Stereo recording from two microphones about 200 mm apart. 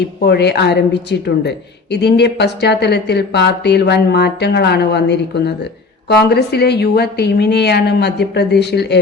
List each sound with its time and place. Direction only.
0.2 s speech: 55° left (ahead or behind)